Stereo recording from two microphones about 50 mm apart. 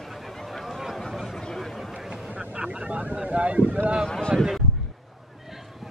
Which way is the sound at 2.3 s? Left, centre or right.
Right.